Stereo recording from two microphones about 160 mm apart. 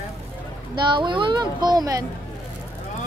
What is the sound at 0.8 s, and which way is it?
Speech, 30° right (ahead or behind).